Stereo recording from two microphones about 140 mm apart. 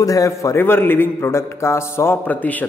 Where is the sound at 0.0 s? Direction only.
25° left (ahead or behind).